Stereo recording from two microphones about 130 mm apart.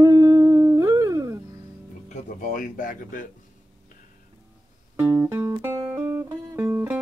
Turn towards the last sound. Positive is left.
turn(degrees=-20)  # may be behind; listen again after turning